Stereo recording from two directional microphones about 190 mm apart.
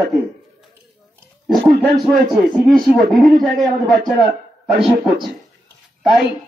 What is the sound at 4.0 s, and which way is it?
Speech, 55° right (ahead or behind).